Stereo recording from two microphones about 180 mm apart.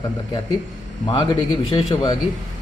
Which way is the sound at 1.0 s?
25° left (ahead or behind).